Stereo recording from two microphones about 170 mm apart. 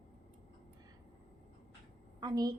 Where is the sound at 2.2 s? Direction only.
25° right (ahead or behind).